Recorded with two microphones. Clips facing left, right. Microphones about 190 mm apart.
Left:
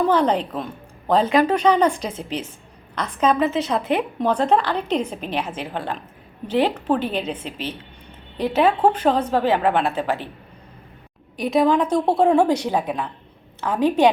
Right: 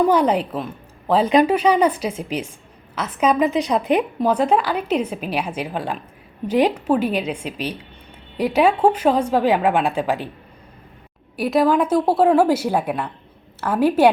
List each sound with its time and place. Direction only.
0.1 s a woman's voice: 10° right (ahead or behind)
1.3 s a woman's voice: 20° right (ahead or behind)
11.3 s a woman's voice: 5° right (ahead or behind)